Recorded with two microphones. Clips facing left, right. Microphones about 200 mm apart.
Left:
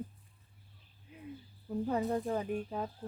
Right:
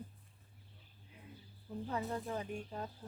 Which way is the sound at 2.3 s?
60° left (ahead or behind).